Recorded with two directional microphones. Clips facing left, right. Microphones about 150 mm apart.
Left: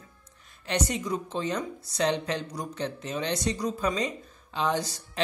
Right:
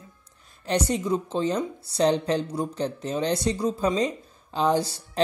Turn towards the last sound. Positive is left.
turn(degrees=-30)  # may be behind; listen again after turning